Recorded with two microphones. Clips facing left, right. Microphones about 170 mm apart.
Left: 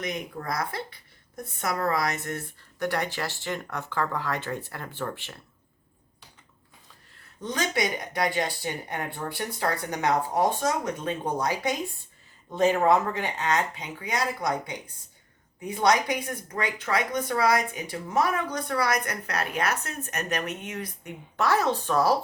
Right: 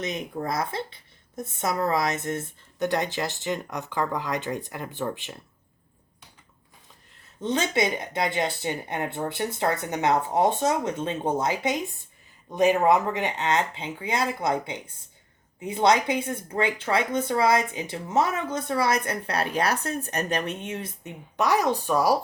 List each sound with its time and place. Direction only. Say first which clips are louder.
0.0 s a woman's voice: right 3 dB; 25° right (ahead or behind)
7.4 s a woman's voice: right 3 dB; 25° right (ahead or behind)